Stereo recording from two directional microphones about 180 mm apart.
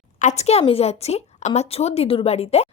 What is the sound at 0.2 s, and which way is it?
A woman's voice, 40° left (ahead or behind).